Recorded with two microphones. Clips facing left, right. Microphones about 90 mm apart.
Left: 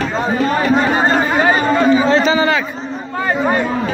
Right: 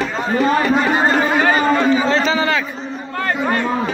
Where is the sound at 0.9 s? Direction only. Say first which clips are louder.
Left 1 dB; 20° left (ahead or behind).